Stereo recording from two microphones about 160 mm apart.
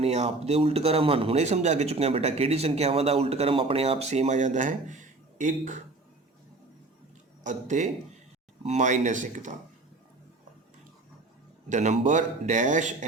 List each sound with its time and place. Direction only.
0.0 s a man's voice: 45° right (ahead or behind)
7.4 s speech: 50° right (ahead or behind)
11.7 s speech: 50° right (ahead or behind)